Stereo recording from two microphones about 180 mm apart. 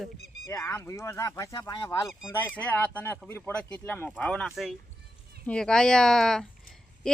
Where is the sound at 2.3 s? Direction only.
10° left (ahead or behind).